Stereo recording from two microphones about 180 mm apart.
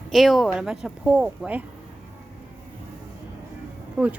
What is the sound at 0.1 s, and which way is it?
A woman's voice, centre (ahead or behind).